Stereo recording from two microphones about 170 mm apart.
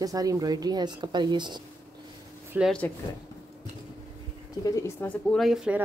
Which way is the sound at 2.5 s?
10° right (ahead or behind).